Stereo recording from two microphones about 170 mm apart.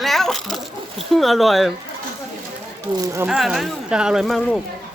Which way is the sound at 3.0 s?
15° right (ahead or behind).